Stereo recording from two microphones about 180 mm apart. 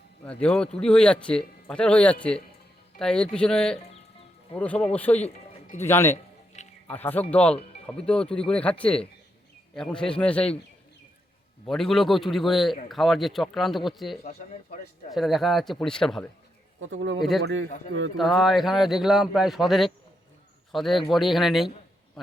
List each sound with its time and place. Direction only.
0.3 s a man's voice: 5° left (ahead or behind)
11.6 s a man's voice: centre (ahead or behind)
16.8 s a man's voice: 90° right
18.2 s a man's voice: centre (ahead or behind)